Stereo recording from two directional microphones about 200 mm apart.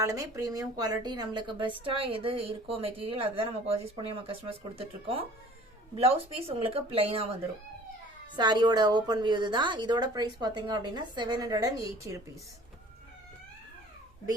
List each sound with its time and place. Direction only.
0.0 s a woman's voice: 15° right (ahead or behind)
8.4 s a woman's voice: 20° right (ahead or behind)